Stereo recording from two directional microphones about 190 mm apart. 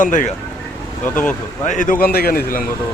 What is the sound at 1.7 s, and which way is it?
Speech, 45° left (ahead or behind).